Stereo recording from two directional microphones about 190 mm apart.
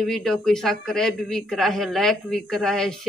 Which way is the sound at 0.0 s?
Centre (ahead or behind).